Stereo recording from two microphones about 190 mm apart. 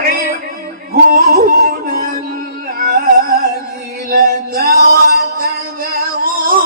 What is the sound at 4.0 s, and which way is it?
Music, 50° right (ahead or behind).